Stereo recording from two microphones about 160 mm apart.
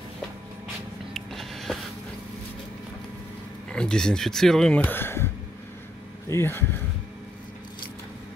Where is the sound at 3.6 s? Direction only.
5° left (ahead or behind).